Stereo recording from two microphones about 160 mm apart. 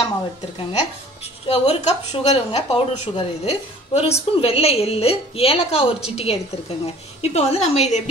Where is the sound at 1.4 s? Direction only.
40° left (ahead or behind).